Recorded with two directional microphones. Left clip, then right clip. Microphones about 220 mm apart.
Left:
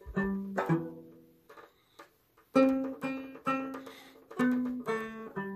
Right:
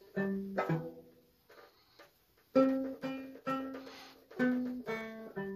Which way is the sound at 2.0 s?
45° left (ahead or behind).